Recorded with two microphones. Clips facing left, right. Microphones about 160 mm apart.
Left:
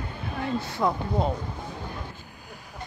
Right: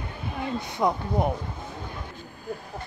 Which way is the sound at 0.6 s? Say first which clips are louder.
Right 1 dB; 20° right (ahead or behind).